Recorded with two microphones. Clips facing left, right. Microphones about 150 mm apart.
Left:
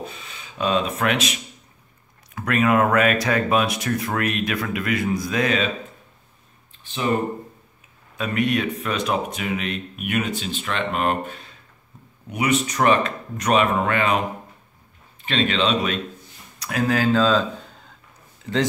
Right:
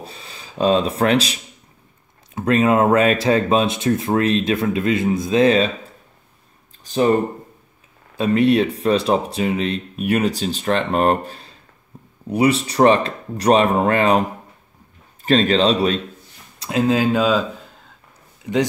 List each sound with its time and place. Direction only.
0.0 s speech: 35° right (ahead or behind)
6.8 s speech: 40° right (ahead or behind)
8.2 s speech: 30° right (ahead or behind)
15.2 s speech: 40° right (ahead or behind)
16.5 s a sound: 25° right (ahead or behind); by 17.9 s centre (ahead or behind)
18.4 s speech: 15° right (ahead or behind)